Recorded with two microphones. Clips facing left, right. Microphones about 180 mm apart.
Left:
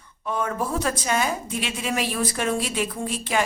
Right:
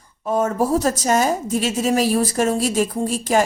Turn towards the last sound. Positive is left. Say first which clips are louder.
# right 7 dB
turn(degrees=-40)  # may be behind; listen again after turning